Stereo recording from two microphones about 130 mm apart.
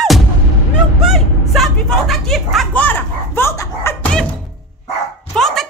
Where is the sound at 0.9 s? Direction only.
Centre (ahead or behind).